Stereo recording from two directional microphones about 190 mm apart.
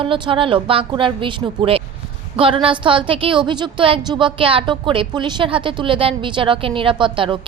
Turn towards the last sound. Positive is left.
turn(degrees=-25)  # may be behind; listen again after turning